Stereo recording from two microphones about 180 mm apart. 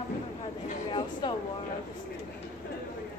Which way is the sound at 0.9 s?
25° left (ahead or behind).